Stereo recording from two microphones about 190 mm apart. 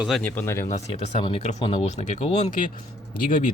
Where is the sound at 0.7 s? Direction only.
35° left (ahead or behind).